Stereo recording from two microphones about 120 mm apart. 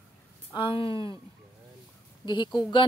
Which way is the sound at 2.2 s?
40° left (ahead or behind).